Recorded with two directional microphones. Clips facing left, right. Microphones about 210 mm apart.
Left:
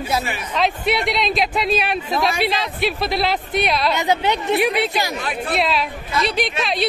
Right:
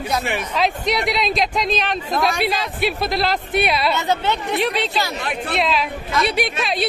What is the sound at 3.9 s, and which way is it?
Speech, 15° left (ahead or behind).